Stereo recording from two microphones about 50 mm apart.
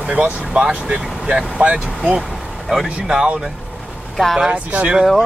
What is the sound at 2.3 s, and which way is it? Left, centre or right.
Vehicle, centre.